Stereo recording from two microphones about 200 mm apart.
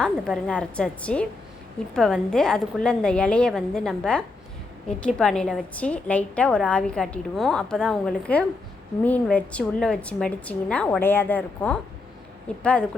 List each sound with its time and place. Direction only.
0.0 s a woman's voice: 5° left (ahead or behind)